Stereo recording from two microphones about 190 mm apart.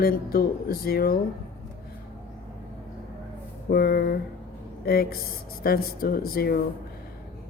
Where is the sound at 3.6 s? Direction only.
55° left (ahead or behind).